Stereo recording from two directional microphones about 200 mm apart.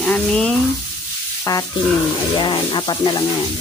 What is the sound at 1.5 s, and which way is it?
Speech, 15° left (ahead or behind).